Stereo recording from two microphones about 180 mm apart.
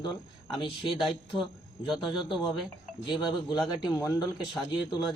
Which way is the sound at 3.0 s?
25° left (ahead or behind).